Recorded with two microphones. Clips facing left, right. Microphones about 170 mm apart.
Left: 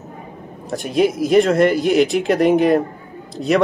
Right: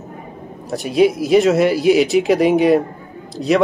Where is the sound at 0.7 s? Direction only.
Centre (ahead or behind).